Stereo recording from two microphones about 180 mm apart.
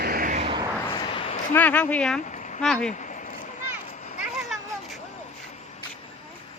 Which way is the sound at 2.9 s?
45° left (ahead or behind).